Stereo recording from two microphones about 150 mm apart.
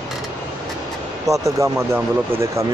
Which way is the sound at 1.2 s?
20° right (ahead or behind).